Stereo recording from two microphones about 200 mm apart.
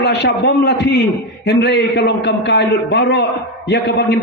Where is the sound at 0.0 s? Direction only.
55° left (ahead or behind).